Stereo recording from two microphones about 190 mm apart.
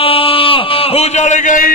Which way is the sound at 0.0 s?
30° left (ahead or behind).